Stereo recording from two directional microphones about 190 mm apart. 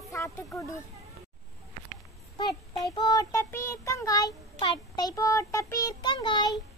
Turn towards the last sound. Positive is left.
turn(degrees=25)  # may be behind; listen again after turning